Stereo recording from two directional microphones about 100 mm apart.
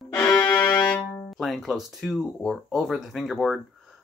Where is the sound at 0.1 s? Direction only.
10° left (ahead or behind).